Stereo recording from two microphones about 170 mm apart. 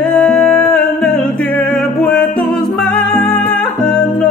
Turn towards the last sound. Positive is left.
turn(degrees=5)  # may be behind; listen again after turning